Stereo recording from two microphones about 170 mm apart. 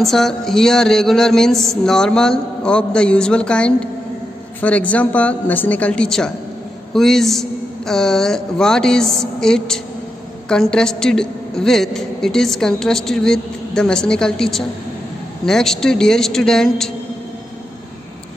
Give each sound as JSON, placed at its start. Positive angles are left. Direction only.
{"t": 0.0, "sound": "a woman's voice", "side_deg": 0}